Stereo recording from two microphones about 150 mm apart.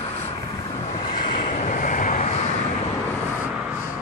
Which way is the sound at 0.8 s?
40° left (ahead or behind).